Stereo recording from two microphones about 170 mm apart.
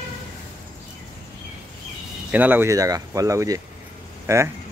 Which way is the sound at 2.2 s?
10° right (ahead or behind).